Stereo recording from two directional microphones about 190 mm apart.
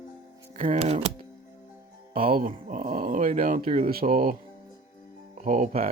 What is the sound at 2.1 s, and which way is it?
Speech, 50° right (ahead or behind).